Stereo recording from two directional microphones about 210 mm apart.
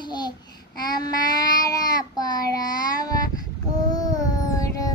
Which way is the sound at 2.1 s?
20° left (ahead or behind).